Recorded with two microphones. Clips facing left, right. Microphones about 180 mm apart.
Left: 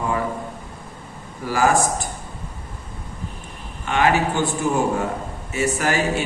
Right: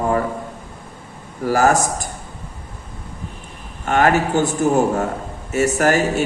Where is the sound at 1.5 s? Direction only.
45° right (ahead or behind).